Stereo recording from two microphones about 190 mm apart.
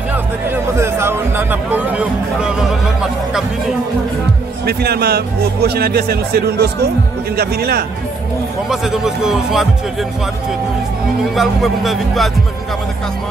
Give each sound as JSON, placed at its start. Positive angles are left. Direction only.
{"t": 0.7, "sound": "speech", "side_deg": -15}
{"t": 4.6, "sound": "speech", "side_deg": -55}
{"t": 8.6, "sound": "speech", "side_deg": 0}
{"t": 11.3, "sound": "speech", "side_deg": 0}